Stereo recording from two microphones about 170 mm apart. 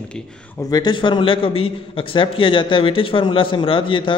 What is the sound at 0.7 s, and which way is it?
A man's voice, 25° left (ahead or behind).